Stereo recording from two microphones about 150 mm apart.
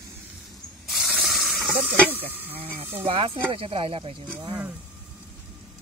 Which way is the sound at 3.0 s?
35° right (ahead or behind).